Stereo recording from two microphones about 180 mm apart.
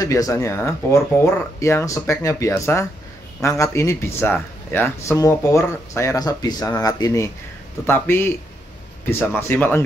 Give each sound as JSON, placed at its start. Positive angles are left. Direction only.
{"t": 0.0, "sound": "speech", "side_deg": 20}